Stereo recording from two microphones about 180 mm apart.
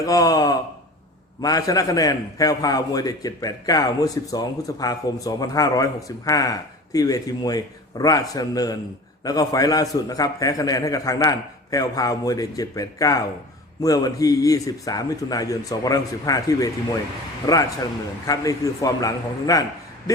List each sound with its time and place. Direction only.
0.0 s a man's voice: 20° left (ahead or behind)